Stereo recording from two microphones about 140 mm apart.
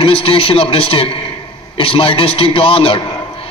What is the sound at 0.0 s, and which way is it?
A man's voice, 40° left (ahead or behind).